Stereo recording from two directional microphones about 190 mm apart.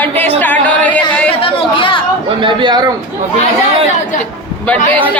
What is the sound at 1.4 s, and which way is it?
Chatter, 25° left (ahead or behind).